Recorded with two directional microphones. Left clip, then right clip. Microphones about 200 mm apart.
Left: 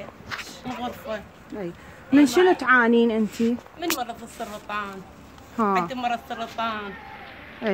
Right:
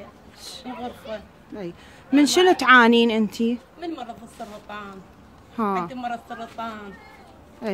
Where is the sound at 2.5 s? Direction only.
30° right (ahead or behind).